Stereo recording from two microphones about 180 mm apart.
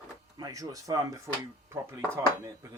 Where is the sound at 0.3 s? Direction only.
20° right (ahead or behind).